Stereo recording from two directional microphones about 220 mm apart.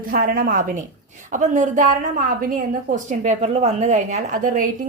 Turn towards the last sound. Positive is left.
turn(degrees=-40)  # may be behind; listen again after turning